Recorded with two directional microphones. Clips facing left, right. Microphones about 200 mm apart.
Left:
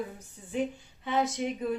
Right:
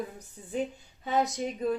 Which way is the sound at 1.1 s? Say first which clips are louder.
Even; 40° right (ahead or behind).